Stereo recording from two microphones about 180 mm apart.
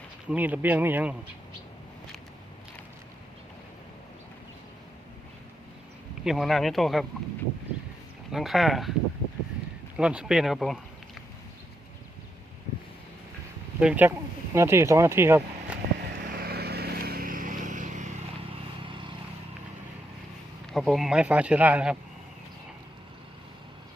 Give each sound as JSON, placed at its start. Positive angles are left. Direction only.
{"t": 0.3, "sound": "speech", "side_deg": -10}
{"t": 6.2, "sound": "speech", "side_deg": 0}
{"t": 8.3, "sound": "speech", "side_deg": 0}
{"t": 10.0, "sound": "speech", "side_deg": -5}
{"t": 13.7, "sound": "speech", "side_deg": -10}
{"t": 16.2, "sound": "vehicle", "side_deg": -60}
{"t": 18.5, "sound": "vehicle", "side_deg": -30}
{"t": 20.7, "sound": "speech", "side_deg": 0}